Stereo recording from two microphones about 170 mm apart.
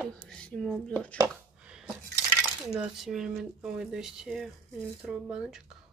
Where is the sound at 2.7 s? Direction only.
Centre (ahead or behind).